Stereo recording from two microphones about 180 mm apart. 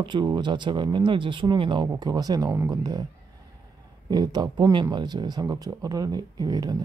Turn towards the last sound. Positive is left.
turn(degrees=-20)  # may be behind; listen again after turning